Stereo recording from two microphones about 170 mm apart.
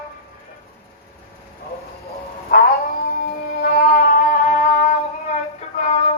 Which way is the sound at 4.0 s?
65° left (ahead or behind).